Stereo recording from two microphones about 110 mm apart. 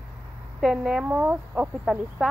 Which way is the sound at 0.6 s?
5° right (ahead or behind).